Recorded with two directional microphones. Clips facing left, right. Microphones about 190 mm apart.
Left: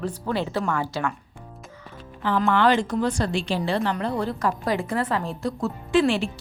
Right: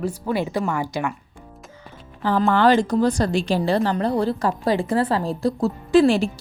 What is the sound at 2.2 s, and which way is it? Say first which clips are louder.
A woman's voice: right 3 dB; 40° right (ahead or behind).